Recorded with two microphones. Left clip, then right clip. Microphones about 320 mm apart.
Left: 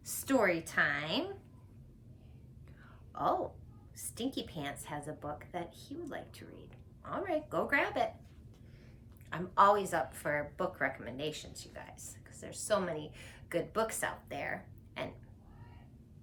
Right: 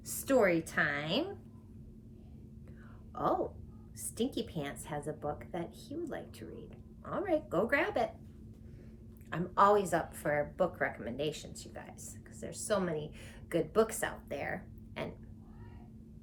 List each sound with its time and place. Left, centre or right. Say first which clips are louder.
0.0 s a woman's voice: right 2 dB; centre
3.2 s a woman's voice: even; centre
9.3 s a woman's voice: even; centre